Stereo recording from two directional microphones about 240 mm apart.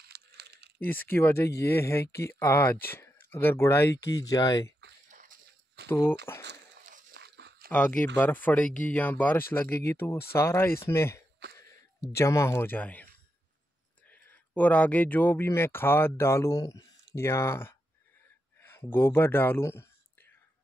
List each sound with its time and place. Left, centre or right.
0.0 s a sound: right
0.7 s speech: centre
5.1 s a sound: right
5.9 s speech: centre
6.9 s crunch: right
7.7 s speech: centre